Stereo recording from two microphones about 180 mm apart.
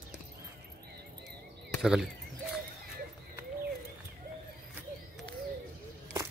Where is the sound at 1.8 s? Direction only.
5° right (ahead or behind).